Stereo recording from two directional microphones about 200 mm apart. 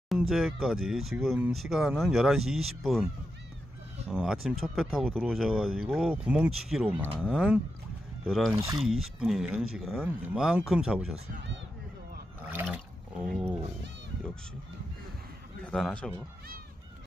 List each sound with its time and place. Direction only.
0.1 s speech: centre (ahead or behind)
4.1 s speech: centre (ahead or behind)
12.4 s a sound: 10° right (ahead or behind)
12.6 s speech: 5° right (ahead or behind)
15.6 s a man's voice: 5° left (ahead or behind)